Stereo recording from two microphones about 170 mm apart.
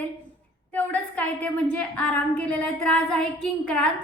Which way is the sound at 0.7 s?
10° left (ahead or behind).